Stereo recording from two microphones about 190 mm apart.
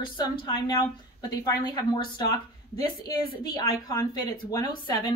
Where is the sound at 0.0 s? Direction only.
25° left (ahead or behind).